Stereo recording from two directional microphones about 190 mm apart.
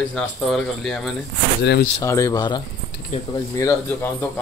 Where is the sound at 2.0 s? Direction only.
15° left (ahead or behind).